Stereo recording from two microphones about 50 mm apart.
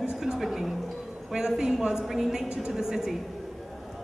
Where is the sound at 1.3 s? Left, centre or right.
Centre.